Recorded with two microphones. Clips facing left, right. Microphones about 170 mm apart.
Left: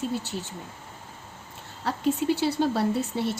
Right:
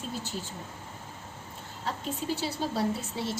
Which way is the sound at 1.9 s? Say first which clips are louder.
Left 5 dB; 75° left (ahead or behind).